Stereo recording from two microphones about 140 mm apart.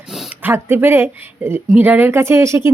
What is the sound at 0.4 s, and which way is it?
Speech, 15° right (ahead or behind).